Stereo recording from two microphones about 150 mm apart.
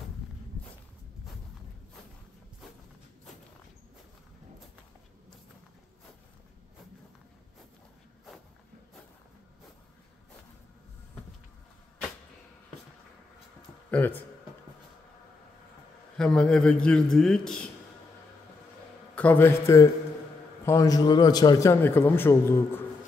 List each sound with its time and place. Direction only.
13.8 s a sound: 10° left (ahead or behind)
16.2 s a man's voice: 5° left (ahead or behind)
19.1 s a man's voice: 10° left (ahead or behind)